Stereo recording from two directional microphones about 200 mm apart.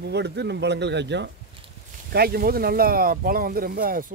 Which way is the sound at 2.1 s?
50° right (ahead or behind).